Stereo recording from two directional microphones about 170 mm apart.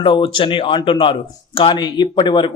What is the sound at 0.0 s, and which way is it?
Speech, 30° left (ahead or behind).